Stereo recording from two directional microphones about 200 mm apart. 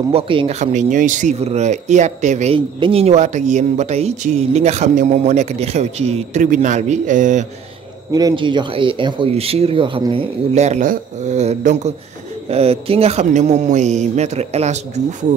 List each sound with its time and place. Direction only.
0.1 s speech: 25° right (ahead or behind)
8.1 s speech: 20° right (ahead or behind); by 14.8 s 35° right (ahead or behind)